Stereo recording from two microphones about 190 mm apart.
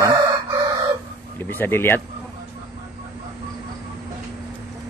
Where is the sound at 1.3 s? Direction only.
10° left (ahead or behind).